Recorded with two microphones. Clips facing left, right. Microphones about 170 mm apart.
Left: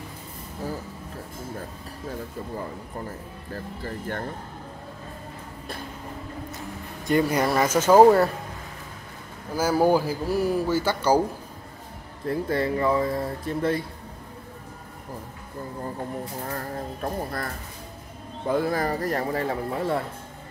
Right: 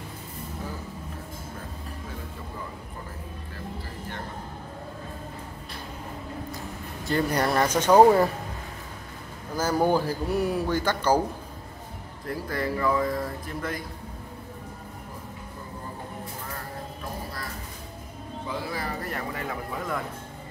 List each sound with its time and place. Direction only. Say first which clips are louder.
7.1 s speech: left 3 dB; 10° left (ahead or behind)
9.5 s speech: left 3 dB; 10° left (ahead or behind)
12.3 s speech: left 5 dB; 25° left (ahead or behind)
17.0 s speech: left 8 dB; 55° left (ahead or behind)
18.5 s speech: left 9 dB; 50° left (ahead or behind); by 20.0 s 30° left (ahead or behind)